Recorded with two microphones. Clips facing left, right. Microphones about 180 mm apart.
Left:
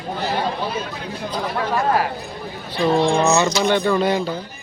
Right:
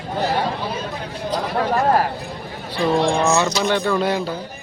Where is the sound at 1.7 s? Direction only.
40° right (ahead or behind).